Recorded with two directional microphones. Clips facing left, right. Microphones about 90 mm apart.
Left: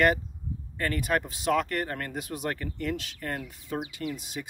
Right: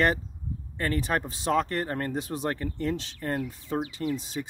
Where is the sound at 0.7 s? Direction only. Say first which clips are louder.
Even; 30° right (ahead or behind).